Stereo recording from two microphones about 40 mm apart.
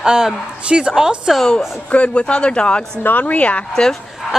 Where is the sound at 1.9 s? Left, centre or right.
Left.